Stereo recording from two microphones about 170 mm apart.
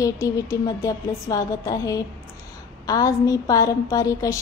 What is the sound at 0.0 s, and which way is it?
A woman's voice, 20° left (ahead or behind).